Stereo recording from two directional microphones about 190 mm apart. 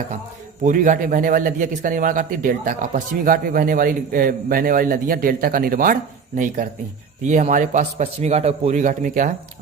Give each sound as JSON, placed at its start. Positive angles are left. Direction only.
{"t": 0.6, "sound": "a man's voice", "side_deg": -45}